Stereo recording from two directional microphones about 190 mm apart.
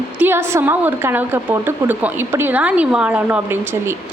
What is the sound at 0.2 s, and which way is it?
A woman's voice, 10° right (ahead or behind).